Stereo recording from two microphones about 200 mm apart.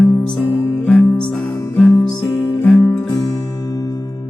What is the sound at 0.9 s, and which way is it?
Music, centre (ahead or behind).